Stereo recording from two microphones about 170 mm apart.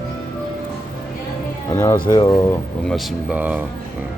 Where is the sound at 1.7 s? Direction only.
15° left (ahead or behind).